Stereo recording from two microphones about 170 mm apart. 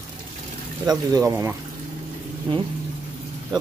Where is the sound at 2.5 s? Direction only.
30° right (ahead or behind).